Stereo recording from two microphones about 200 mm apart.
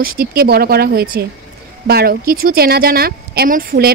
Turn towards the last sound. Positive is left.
turn(degrees=-50)  # may be behind; listen again after turning